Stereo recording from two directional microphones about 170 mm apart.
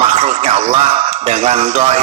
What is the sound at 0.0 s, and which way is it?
Speech, 40° right (ahead or behind).